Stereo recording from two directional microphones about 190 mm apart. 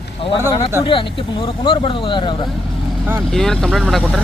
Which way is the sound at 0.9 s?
25° left (ahead or behind).